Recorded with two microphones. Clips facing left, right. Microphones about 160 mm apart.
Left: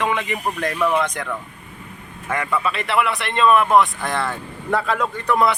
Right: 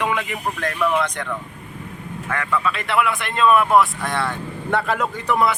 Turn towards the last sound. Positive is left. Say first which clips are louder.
# left 1 dB
turn(degrees=-5)  # may be behind; listen again after turning